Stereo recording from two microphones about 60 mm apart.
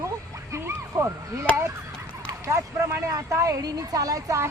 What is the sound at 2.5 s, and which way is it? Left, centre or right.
Speech, right.